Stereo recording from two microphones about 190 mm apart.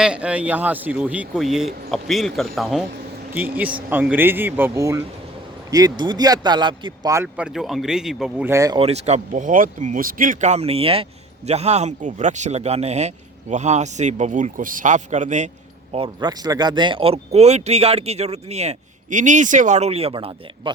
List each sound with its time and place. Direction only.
0.0 s speech: 5° right (ahead or behind)
8.8 s speech: 35° right (ahead or behind)
15.9 s speech: 30° right (ahead or behind)